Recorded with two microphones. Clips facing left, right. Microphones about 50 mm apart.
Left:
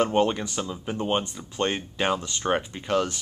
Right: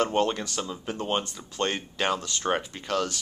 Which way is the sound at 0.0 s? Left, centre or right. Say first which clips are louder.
Left 2 dB; centre.